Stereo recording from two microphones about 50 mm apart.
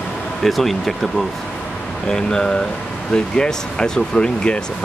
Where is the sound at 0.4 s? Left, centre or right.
Centre.